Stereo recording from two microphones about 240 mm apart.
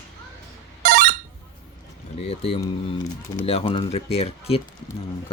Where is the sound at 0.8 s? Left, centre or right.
Right.